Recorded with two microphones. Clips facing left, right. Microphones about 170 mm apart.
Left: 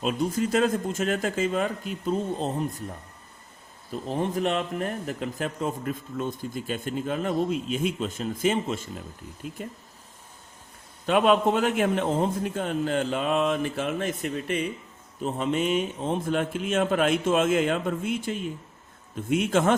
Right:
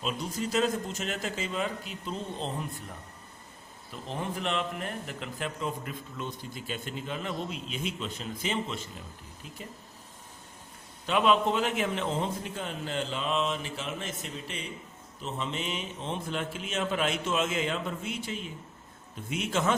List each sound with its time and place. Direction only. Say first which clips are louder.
0.0 s speech: left 7 dB; 50° left (ahead or behind)
4.0 s speech: left 7 dB; 40° left (ahead or behind)
11.0 s speech: left 4 dB; 50° left (ahead or behind)
15.2 s speech: left 9 dB; 50° left (ahead or behind)